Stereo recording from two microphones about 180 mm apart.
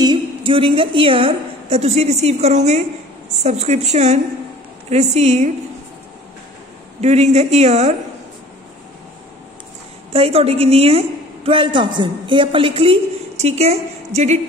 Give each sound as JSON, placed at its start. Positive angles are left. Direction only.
{"t": 0.0, "sound": "a woman's voice", "side_deg": -25}
{"t": 7.0, "sound": "a woman's voice", "side_deg": -40}
{"t": 10.1, "sound": "a woman's voice", "side_deg": -35}